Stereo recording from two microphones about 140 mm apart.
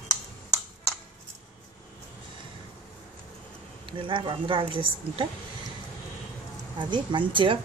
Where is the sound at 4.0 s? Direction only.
35° right (ahead or behind).